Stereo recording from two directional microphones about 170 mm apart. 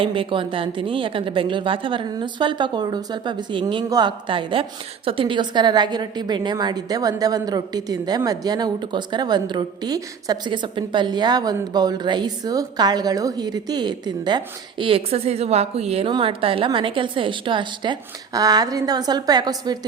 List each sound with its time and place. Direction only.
0.0 s a woman's voice: 30° right (ahead or behind)